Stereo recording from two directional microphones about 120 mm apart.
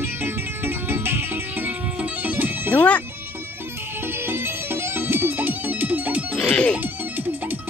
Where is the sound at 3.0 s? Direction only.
20° right (ahead or behind).